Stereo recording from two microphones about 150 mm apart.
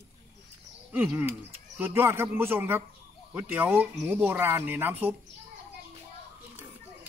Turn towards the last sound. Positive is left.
turn(degrees=-10)  # may be behind; listen again after turning